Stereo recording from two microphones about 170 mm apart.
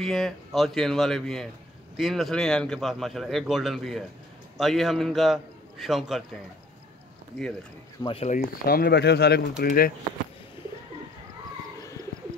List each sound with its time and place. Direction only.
0.0 s a man's voice: centre (ahead or behind)
8.1 s speech: 40° left (ahead or behind)
8.6 s speech: 65° left (ahead or behind)
9.6 s speech: 60° left (ahead or behind)